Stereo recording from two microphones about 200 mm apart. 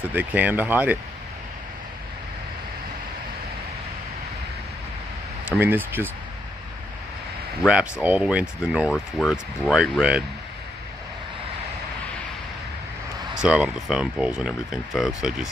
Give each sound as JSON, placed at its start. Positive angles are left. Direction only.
{"t": 0.0, "sound": "speech", "side_deg": -10}
{"t": 5.6, "sound": "speech", "side_deg": -10}
{"t": 7.6, "sound": "speech", "side_deg": -5}
{"t": 13.3, "sound": "speech", "side_deg": -5}